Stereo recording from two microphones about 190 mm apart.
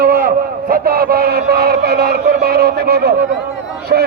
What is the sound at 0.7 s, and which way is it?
Music, 50° right (ahead or behind).